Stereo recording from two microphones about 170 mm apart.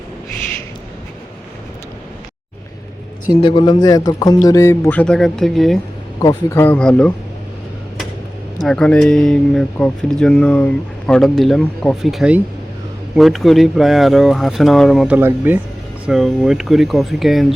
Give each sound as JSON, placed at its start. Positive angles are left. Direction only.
{"t": 3.4, "sound": "a man's voice", "side_deg": 30}
{"t": 6.1, "sound": "a man's voice", "side_deg": 20}
{"t": 6.6, "sound": "speech", "side_deg": 5}
{"t": 8.6, "sound": "speech", "side_deg": 5}